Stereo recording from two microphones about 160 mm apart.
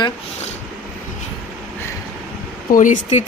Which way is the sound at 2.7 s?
55° left (ahead or behind).